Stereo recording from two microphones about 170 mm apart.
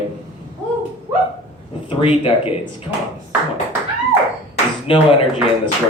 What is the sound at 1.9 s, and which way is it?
Speech, 30° left (ahead or behind).